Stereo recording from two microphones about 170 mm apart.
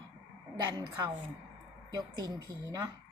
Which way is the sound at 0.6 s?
25° right (ahead or behind).